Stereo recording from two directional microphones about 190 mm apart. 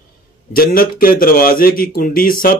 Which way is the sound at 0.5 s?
50° left (ahead or behind).